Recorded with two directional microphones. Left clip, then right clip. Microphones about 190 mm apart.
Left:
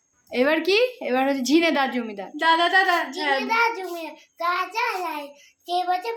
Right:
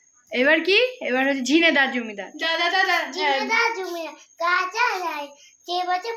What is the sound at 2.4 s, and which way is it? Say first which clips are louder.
Speech: left 3 dB; 65° left (ahead or behind).